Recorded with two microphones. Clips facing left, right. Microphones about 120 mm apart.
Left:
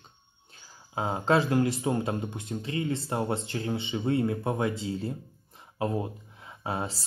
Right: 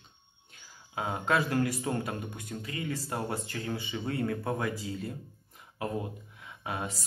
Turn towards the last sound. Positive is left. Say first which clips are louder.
# left 3 dB
turn(degrees=30)  # may be behind; listen again after turning